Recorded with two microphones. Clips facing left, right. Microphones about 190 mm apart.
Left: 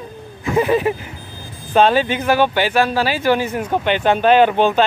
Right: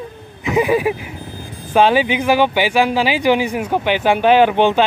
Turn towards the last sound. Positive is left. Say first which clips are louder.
# right 1 dB
turn(degrees=-15)  # may be behind; listen again after turning